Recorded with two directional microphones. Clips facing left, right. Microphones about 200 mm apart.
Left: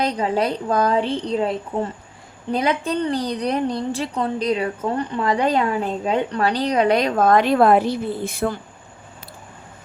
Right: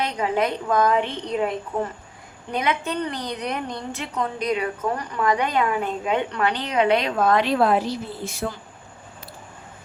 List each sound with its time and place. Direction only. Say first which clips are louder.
0.0 s a woman's voice: left 2 dB; 35° left (ahead or behind); by 8.5 s 55° left (ahead or behind)